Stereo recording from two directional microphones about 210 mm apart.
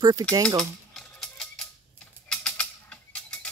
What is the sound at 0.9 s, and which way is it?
Music, centre (ahead or behind).